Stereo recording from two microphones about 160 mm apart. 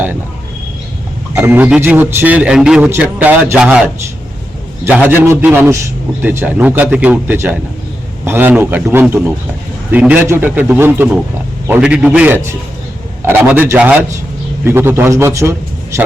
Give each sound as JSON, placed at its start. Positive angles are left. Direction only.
{"t": 1.4, "sound": "a man's voice", "side_deg": -15}
{"t": 4.9, "sound": "a man's voice", "side_deg": -10}